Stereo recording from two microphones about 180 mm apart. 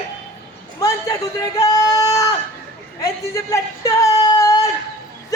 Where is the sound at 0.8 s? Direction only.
20° left (ahead or behind).